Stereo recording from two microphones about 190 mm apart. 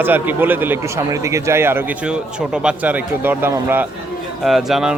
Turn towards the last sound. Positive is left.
turn(degrees=0)  # may be behind; listen again after turning